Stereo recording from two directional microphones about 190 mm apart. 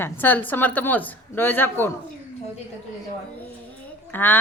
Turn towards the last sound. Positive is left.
turn(degrees=10)  # may be behind; listen again after turning